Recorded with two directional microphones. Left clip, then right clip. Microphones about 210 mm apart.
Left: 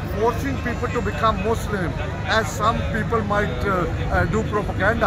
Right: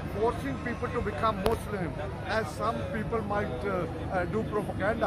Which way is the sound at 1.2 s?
5° right (ahead or behind).